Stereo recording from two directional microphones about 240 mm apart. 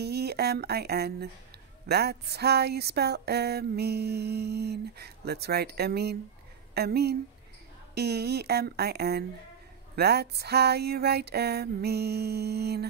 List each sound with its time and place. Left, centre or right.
0.0 s speech: right
1.9 s music: right
6.7 s speech: right
7.9 s a sound: right